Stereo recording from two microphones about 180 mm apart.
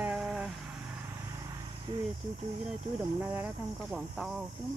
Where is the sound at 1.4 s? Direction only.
25° right (ahead or behind).